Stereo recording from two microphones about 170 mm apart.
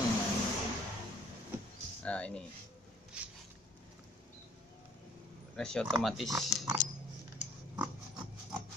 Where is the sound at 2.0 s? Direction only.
5° left (ahead or behind).